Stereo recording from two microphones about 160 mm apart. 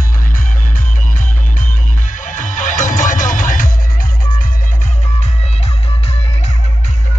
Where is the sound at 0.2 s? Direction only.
60° left (ahead or behind); by 6.5 s 40° left (ahead or behind).